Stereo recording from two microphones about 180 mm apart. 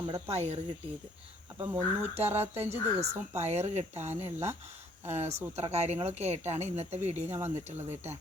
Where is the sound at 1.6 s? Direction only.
10° right (ahead or behind).